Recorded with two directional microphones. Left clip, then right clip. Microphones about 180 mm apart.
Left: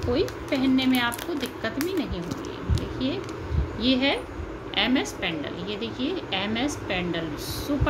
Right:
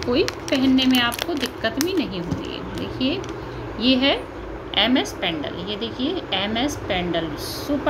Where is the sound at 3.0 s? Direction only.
20° right (ahead or behind).